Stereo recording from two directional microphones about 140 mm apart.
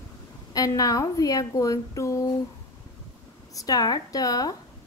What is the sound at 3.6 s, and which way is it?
Speech, 25° left (ahead or behind).